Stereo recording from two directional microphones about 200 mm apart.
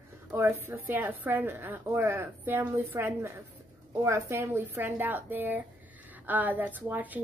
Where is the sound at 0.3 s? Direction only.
10° right (ahead or behind).